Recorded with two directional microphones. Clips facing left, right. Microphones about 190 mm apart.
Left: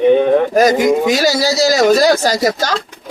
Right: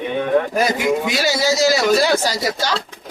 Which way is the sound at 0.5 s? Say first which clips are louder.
Left 7 dB; 40° left (ahead or behind).